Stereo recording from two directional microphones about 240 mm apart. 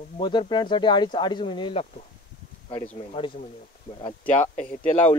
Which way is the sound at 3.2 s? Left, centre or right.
Left.